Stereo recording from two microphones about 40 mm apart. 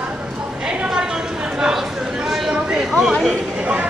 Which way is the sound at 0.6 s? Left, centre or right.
Centre.